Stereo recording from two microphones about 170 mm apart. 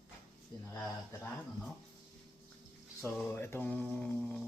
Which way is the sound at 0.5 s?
20° left (ahead or behind).